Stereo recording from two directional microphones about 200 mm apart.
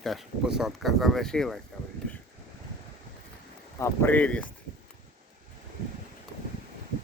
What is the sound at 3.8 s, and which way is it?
Speech, 10° left (ahead or behind).